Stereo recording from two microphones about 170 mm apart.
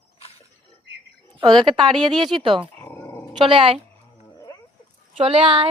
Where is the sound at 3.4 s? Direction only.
30° right (ahead or behind).